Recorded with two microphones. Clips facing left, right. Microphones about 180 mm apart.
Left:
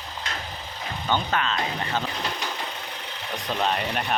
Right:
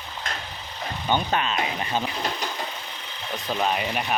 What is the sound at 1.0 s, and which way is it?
Speech, 15° right (ahead or behind).